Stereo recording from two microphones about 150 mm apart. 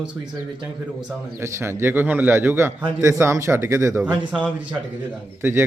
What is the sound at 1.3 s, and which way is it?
Speech, 15° right (ahead or behind).